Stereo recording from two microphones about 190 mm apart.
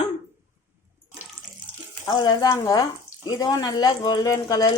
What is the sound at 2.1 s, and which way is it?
Speech, 20° left (ahead or behind).